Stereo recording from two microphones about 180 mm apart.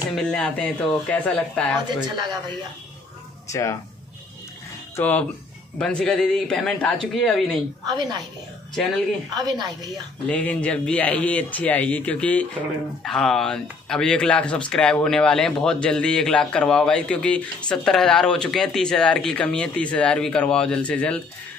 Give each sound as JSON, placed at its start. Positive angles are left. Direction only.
{"t": 0.1, "sound": "speech", "side_deg": 5}
{"t": 4.9, "sound": "speech", "side_deg": 10}
{"t": 7.8, "sound": "a woman's voice", "side_deg": -25}
{"t": 9.3, "sound": "a woman's voice", "side_deg": -20}
{"t": 10.2, "sound": "a man's voice", "side_deg": 5}